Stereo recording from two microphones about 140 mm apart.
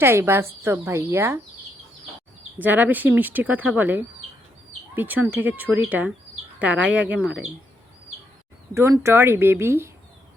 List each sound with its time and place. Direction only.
0.0 s speech: 15° right (ahead or behind)
2.6 s speech: 10° right (ahead or behind)
8.7 s speech: 20° right (ahead or behind)